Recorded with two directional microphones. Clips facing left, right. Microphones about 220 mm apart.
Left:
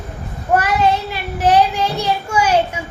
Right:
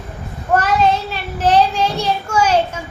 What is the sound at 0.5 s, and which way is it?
A child's voice, 10° left (ahead or behind).